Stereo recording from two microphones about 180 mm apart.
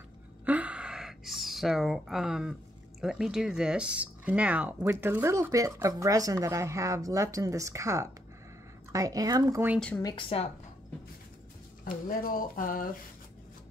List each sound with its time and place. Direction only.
0.5 s a sound: 10° right (ahead or behind)
3.0 s speech: 5° right (ahead or behind)
9.8 s speech: 5° left (ahead or behind)
10.0 s a woman's voice: 30° left (ahead or behind)
11.8 s speech: 50° left (ahead or behind)